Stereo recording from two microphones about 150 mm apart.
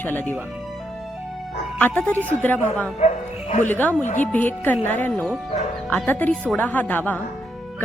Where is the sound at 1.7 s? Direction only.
10° left (ahead or behind).